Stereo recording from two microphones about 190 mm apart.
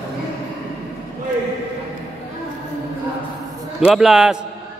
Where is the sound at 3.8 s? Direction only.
Centre (ahead or behind).